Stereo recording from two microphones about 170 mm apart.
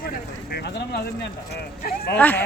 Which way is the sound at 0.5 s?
75° left (ahead or behind).